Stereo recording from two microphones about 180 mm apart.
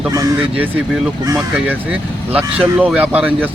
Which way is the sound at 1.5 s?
5° right (ahead or behind).